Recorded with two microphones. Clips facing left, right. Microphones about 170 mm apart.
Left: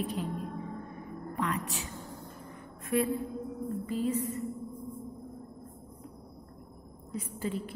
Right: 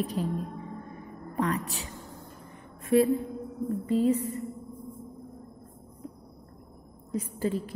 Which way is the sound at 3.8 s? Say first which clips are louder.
Right 7 dB; 35° right (ahead or behind).